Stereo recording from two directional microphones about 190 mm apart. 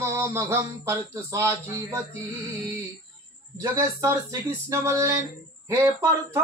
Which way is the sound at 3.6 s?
15° right (ahead or behind).